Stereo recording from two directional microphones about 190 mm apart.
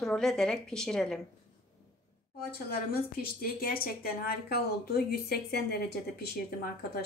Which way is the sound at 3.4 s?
50° left (ahead or behind).